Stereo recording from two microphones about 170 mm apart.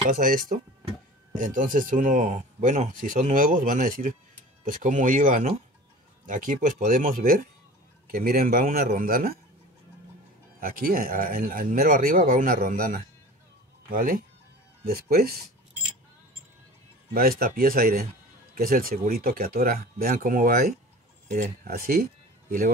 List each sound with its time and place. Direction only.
0.1 s speech: 55° right (ahead or behind)
10.6 s speech: 55° right (ahead or behind)
17.1 s speech: 60° right (ahead or behind)